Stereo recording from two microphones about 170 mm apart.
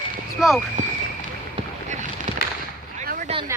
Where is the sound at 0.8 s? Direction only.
45° right (ahead or behind).